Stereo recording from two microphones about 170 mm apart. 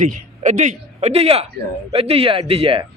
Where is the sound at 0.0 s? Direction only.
45° right (ahead or behind).